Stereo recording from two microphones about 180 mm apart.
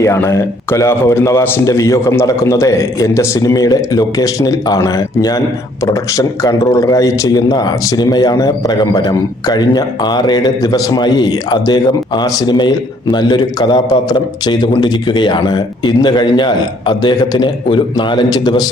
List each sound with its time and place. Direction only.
0.0 s a man's voice: 15° left (ahead or behind)